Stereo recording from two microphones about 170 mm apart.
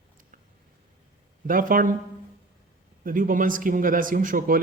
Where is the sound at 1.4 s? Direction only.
55° right (ahead or behind).